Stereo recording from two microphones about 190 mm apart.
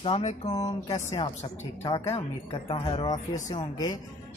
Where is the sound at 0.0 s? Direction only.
30° left (ahead or behind).